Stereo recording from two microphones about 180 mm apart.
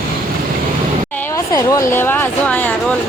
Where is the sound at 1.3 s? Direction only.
20° left (ahead or behind).